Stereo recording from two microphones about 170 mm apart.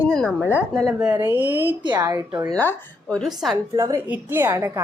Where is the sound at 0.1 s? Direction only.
5° left (ahead or behind).